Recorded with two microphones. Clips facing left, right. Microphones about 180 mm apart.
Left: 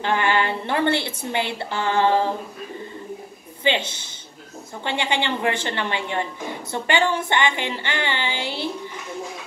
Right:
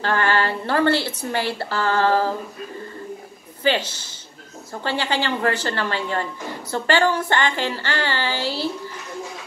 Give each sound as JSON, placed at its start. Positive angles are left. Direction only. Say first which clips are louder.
{"t": 0.0, "sound": "a woman's voice", "louder": "even", "side_deg": 20}
{"t": 4.8, "sound": "a woman's voice", "louder": "right 1 dB", "side_deg": 20}